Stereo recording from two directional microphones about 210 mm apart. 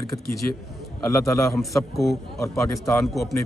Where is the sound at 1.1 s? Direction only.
15° left (ahead or behind).